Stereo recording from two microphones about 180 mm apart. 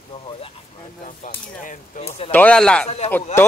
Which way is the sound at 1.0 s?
50° left (ahead or behind).